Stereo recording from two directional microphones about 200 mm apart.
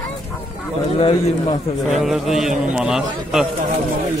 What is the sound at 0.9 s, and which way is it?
Speech, 30° left (ahead or behind).